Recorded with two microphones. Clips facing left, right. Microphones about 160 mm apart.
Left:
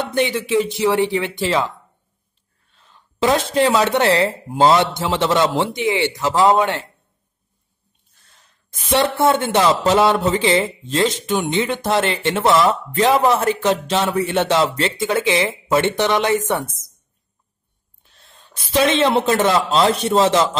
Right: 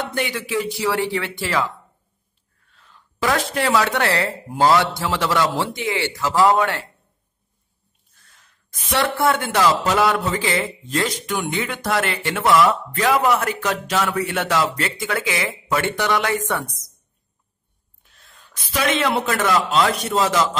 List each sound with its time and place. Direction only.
0.1 s speech: 20° left (ahead or behind)
2.7 s a sound: 25° left (ahead or behind)
3.5 s speech: 20° left (ahead or behind)
8.6 s speech: 25° left (ahead or behind)
18.0 s speech: 30° left (ahead or behind)